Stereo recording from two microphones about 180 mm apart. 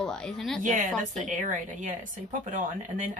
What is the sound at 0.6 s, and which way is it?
Speech, 40° right (ahead or behind).